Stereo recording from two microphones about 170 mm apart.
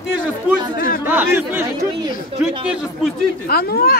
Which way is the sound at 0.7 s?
55° left (ahead or behind).